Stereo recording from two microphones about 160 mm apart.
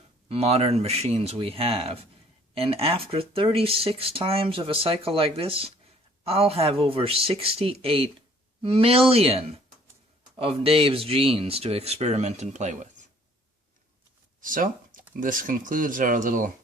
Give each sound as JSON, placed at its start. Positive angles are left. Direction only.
{"t": 0.3, "sound": "speech", "side_deg": -40}
{"t": 14.4, "sound": "a sound", "side_deg": -60}
{"t": 15.2, "sound": "speech", "side_deg": -55}